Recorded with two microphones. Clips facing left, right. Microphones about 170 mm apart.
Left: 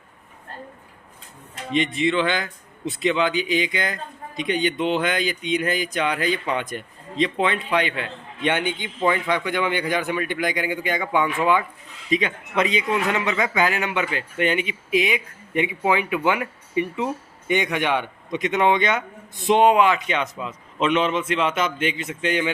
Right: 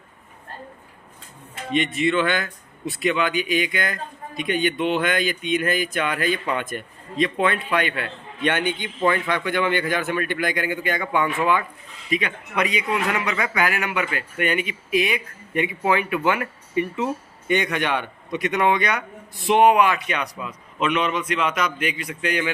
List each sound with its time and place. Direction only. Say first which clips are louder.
2.0 s a man's voice: even; 20° left (ahead or behind)